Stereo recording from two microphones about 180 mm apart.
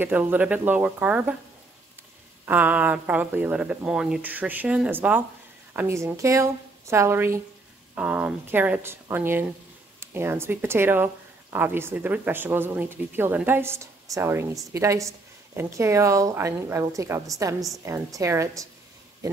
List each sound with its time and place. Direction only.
0.0 s speech: 10° right (ahead or behind)
2.4 s speech: 10° right (ahead or behind)
17.6 s a woman's voice: centre (ahead or behind)
17.8 s speech: 15° right (ahead or behind)